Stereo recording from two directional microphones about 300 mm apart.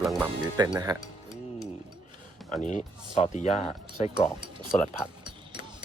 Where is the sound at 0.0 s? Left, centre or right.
Centre.